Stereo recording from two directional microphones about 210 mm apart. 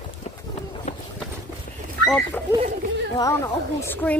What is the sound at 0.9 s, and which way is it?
Run, 35° left (ahead or behind).